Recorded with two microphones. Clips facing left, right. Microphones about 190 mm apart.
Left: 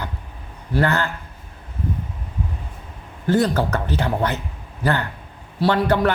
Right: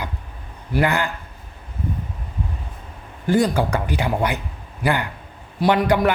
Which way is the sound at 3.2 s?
10° right (ahead or behind).